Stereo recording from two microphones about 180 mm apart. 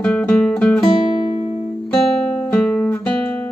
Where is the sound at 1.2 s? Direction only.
35° left (ahead or behind).